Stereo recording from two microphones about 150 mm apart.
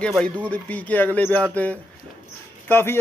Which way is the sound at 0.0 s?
5° left (ahead or behind).